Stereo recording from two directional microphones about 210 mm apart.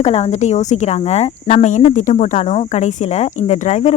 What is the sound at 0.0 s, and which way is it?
Speech, 30° left (ahead or behind).